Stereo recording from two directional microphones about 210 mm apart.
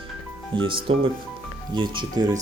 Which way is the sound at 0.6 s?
25° right (ahead or behind).